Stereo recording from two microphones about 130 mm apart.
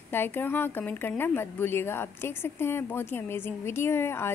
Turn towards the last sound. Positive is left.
turn(degrees=20)  # may be behind; listen again after turning